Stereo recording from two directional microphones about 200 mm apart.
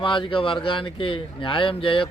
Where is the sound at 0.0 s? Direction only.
25° left (ahead or behind).